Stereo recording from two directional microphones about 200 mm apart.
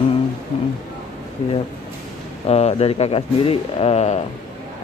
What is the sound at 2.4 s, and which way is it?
Speech, 30° left (ahead or behind).